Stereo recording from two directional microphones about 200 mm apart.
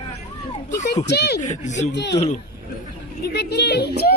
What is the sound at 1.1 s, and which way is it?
Cough, 55° left (ahead or behind).